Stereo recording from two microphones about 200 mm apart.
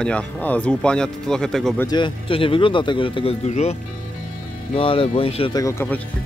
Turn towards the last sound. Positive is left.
turn(degrees=10)  # may be behind; listen again after turning